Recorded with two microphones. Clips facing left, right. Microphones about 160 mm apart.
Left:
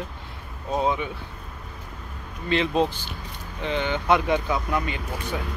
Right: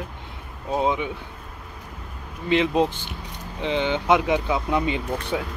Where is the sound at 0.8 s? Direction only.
20° right (ahead or behind).